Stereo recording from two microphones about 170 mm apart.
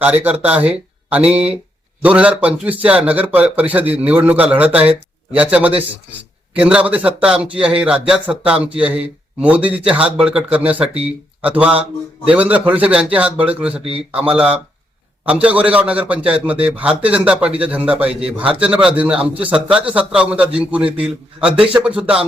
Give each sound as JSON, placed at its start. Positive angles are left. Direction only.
{"t": 0.0, "sound": "a man's voice", "side_deg": -10}
{"t": 13.8, "sound": "a man's voice", "side_deg": -35}
{"t": 14.2, "sound": "a man's voice", "side_deg": -10}